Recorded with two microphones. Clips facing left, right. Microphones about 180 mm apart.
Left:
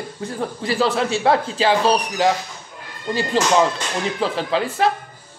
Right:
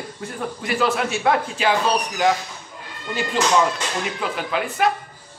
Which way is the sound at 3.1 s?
35° left (ahead or behind).